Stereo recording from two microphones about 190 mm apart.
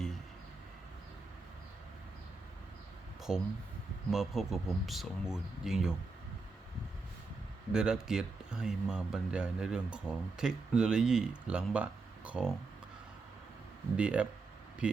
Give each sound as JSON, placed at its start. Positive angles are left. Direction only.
{"t": 3.3, "sound": "speech", "side_deg": 0}
{"t": 7.7, "sound": "speech", "side_deg": -5}
{"t": 13.9, "sound": "speech", "side_deg": -5}